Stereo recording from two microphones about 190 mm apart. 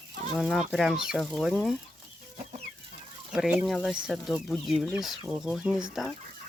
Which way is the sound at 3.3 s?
5° right (ahead or behind).